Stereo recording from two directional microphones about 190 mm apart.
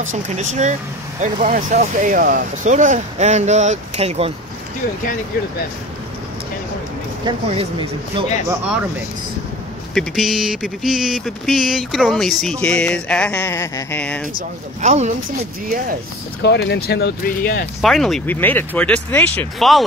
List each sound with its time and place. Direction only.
0.0 s speech: 40° right (ahead or behind)
7.2 s speech: 30° right (ahead or behind)
8.5 s speech: 5° right (ahead or behind)
9.9 s a sound: centre (ahead or behind)
14.8 s speech: 35° right (ahead or behind)
16.4 s speech: 65° left (ahead or behind)
17.8 s speech: centre (ahead or behind)